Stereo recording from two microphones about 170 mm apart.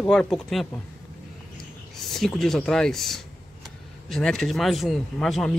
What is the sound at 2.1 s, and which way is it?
Speech, centre (ahead or behind).